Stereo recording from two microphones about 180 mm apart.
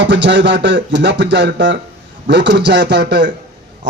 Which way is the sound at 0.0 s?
80° right.